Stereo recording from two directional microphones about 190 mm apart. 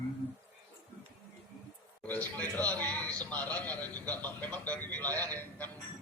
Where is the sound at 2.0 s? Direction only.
10° left (ahead or behind).